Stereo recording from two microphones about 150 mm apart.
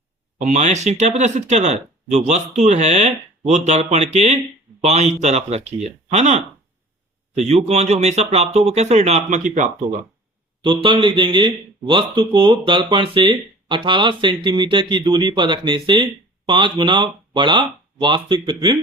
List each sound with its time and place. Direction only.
0.4 s speech: 50° right (ahead or behind)
10.6 s speech: 35° right (ahead or behind)